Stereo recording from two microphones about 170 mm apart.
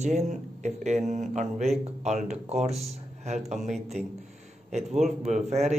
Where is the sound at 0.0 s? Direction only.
40° right (ahead or behind).